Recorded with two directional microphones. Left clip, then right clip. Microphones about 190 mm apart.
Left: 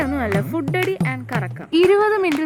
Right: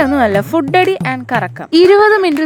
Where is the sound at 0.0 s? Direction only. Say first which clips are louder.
Right 10 dB; 60° right (ahead or behind).